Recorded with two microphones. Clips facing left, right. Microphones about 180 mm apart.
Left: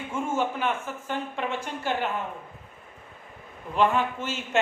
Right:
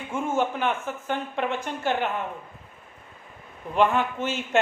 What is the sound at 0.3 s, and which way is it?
Speech, 50° right (ahead or behind).